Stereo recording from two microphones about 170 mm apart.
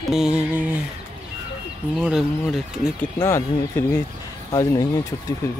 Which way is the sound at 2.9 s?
15° left (ahead or behind).